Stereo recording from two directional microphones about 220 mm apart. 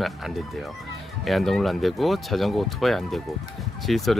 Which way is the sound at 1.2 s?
Centre (ahead or behind).